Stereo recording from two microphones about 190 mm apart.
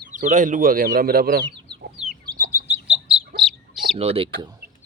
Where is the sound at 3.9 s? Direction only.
30° right (ahead or behind).